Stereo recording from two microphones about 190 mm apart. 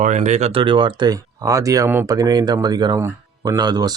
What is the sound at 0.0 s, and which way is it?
Speech, 40° right (ahead or behind).